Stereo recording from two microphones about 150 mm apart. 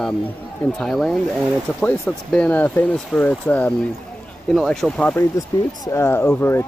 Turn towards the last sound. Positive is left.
turn(degrees=15)  # may be behind; listen again after turning